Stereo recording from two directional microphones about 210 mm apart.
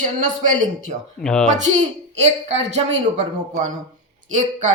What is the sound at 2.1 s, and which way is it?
A man's voice, 30° right (ahead or behind).